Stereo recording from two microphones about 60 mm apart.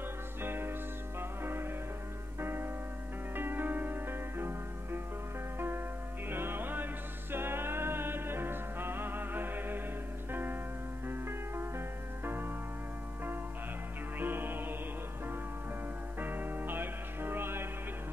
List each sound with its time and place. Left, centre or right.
0.4 s music: right
6.3 s music: right
14.2 s music: right
16.2 s music: right